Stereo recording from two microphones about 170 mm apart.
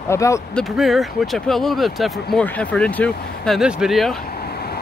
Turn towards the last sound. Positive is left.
turn(degrees=65)  # may be behind; listen again after turning